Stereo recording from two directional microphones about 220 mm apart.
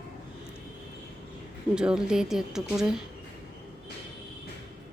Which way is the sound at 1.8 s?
5° right (ahead or behind).